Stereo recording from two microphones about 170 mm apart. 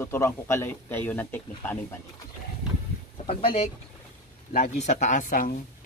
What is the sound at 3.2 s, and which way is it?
Speech, 35° left (ahead or behind).